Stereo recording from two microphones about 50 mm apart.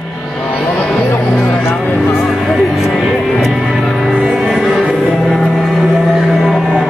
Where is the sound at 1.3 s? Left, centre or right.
Centre.